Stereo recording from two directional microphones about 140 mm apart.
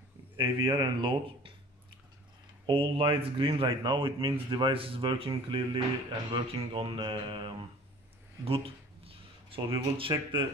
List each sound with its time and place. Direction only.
0.4 s speech: 35° right (ahead or behind)
2.6 s speech: 35° right (ahead or behind)
8.5 s a sound: 40° right (ahead or behind)
9.9 s speech: 40° right (ahead or behind)